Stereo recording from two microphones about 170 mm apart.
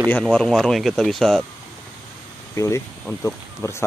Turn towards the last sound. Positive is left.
turn(degrees=15)  # may be behind; listen again after turning